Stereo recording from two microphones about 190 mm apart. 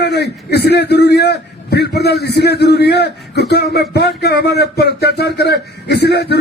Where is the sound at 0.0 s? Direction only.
60° left (ahead or behind).